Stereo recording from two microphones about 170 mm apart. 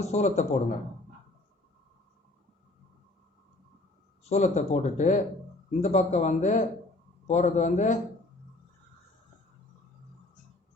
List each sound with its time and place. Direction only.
0.0 s a man's voice: 40° left (ahead or behind)
4.2 s speech: 40° left (ahead or behind)